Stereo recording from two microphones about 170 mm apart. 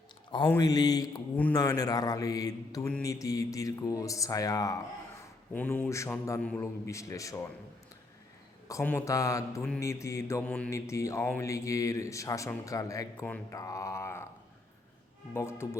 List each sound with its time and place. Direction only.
0.6 s speech: 25° left (ahead or behind)
5.2 s a man's voice: 10° left (ahead or behind)
6.4 s mantra: 10° left (ahead or behind)
8.6 s speech: 20° left (ahead or behind)
8.9 s mantra: 15° left (ahead or behind)
9.6 s mantra: 5° left (ahead or behind)
9.8 s mantra: 15° left (ahead or behind)
13.2 s mantra: 10° left (ahead or behind)
15.3 s mantra: 15° left (ahead or behind)